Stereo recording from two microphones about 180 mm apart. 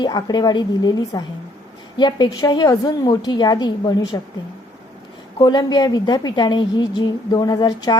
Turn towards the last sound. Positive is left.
turn(degrees=25)  # may be behind; listen again after turning